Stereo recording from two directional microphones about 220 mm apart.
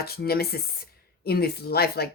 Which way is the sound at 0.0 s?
45° left (ahead or behind).